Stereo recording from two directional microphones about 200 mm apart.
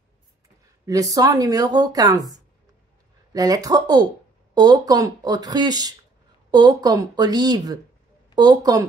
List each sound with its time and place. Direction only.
0.8 s speech: 20° right (ahead or behind)